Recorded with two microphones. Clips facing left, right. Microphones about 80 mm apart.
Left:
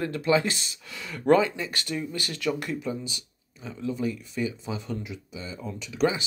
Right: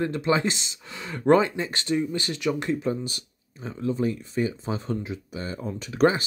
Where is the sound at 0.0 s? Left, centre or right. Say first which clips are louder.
Right 1 dB; right.